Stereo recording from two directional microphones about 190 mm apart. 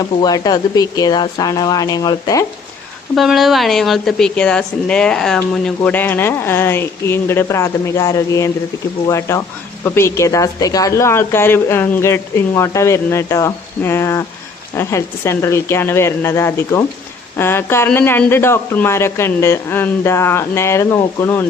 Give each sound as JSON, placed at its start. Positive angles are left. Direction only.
{"t": 0.0, "sound": "speech", "side_deg": 20}
{"t": 3.2, "sound": "a woman's voice", "side_deg": 0}